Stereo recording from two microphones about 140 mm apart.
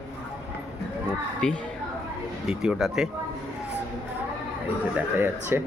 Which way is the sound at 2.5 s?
5° right (ahead or behind).